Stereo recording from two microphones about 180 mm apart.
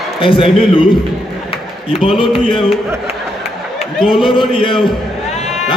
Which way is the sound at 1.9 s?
30° left (ahead or behind).